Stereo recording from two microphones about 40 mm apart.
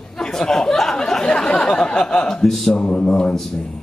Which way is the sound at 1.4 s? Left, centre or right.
Centre.